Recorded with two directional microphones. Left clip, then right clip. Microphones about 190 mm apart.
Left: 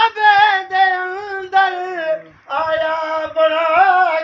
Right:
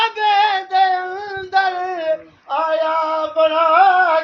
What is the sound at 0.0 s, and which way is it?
Female singing, 15° left (ahead or behind).